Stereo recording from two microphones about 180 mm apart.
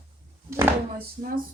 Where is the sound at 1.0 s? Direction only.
55° right (ahead or behind).